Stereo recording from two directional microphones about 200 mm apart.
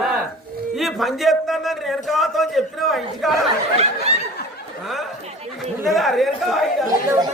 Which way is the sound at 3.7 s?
30° right (ahead or behind).